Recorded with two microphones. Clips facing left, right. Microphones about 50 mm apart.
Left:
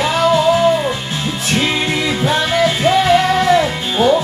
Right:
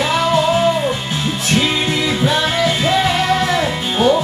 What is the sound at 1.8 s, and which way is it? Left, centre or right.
Music, centre.